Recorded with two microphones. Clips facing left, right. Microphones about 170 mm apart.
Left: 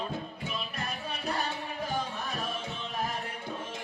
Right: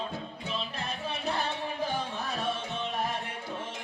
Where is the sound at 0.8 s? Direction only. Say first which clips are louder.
Right 1 dB; 30° right (ahead or behind).